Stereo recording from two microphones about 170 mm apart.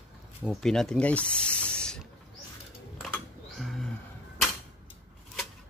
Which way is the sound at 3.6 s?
Centre (ahead or behind).